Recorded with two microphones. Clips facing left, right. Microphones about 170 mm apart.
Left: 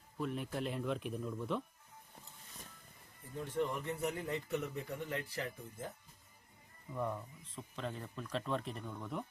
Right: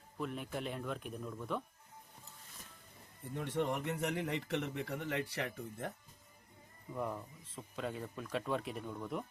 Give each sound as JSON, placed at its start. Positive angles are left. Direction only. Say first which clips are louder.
{"t": 0.2, "sound": "speech", "louder": "left 1 dB", "side_deg": 0}
{"t": 3.3, "sound": "speech", "louder": "right 1 dB", "side_deg": -75}
{"t": 6.9, "sound": "speech", "louder": "left 1 dB", "side_deg": -5}